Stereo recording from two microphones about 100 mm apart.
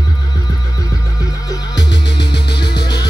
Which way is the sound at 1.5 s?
45° left (ahead or behind).